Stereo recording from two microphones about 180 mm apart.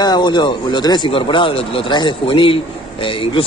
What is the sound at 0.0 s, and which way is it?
Speech, 25° left (ahead or behind).